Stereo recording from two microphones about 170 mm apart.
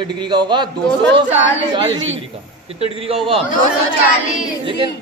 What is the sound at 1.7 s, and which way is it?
A man's voice, 30° right (ahead or behind).